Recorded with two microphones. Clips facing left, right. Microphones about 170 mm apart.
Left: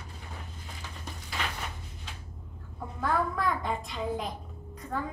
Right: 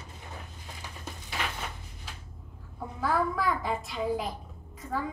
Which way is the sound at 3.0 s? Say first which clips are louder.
Right 1 dB; centre (ahead or behind).